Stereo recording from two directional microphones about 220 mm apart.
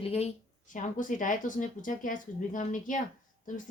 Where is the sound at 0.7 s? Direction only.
35° left (ahead or behind).